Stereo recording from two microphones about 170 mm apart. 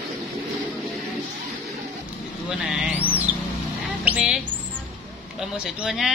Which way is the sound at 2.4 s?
5° right (ahead or behind).